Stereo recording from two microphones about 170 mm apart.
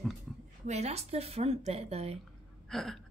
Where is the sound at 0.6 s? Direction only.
40° right (ahead or behind).